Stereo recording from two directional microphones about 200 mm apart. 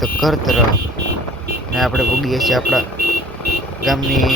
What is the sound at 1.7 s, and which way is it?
Speech, centre (ahead or behind).